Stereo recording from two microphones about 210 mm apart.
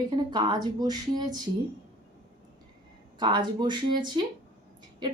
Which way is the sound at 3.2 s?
20° right (ahead or behind).